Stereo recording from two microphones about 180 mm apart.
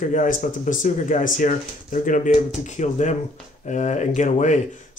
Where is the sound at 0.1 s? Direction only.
45° left (ahead or behind).